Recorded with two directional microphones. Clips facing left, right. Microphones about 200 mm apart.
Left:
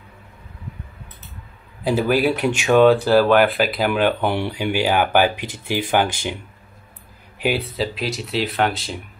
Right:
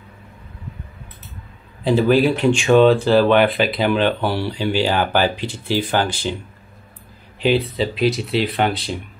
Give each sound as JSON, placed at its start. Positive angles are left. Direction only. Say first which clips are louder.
{"t": 2.0, "sound": "speech", "louder": "right 3 dB", "side_deg": 10}
{"t": 7.7, "sound": "speech", "louder": "right 5 dB", "side_deg": 0}